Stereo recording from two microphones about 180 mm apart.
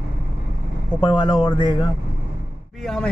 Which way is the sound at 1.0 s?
25° left (ahead or behind).